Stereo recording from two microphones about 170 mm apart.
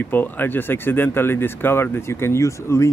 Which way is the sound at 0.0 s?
10° left (ahead or behind).